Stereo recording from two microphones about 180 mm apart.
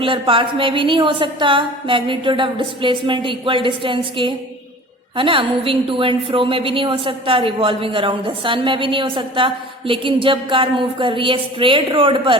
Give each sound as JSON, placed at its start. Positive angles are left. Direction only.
{"t": 0.0, "sound": "a woman's voice", "side_deg": -30}